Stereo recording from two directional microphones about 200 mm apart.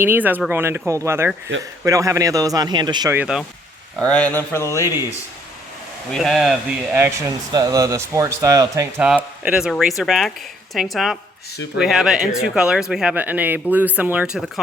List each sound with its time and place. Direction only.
0.0 s speech: 10° right (ahead or behind)
3.2 s speech: 5° right (ahead or behind); by 4.9 s 15° left (ahead or behind)
6.1 s speech: centre (ahead or behind)
6.9 s speech: 15° right (ahead or behind)
9.4 s speech: 5° right (ahead or behind)